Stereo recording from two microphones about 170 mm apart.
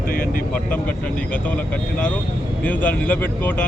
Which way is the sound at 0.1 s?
55° left (ahead or behind).